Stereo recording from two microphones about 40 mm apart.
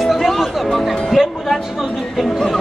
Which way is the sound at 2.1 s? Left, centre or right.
Centre.